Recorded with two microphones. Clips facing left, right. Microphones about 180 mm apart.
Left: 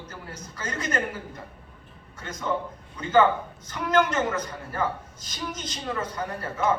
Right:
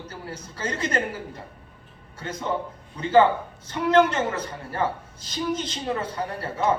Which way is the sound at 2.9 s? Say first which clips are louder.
Right 2 dB; 30° right (ahead or behind).